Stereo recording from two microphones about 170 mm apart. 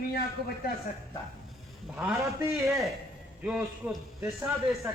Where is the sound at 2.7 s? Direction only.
Centre (ahead or behind).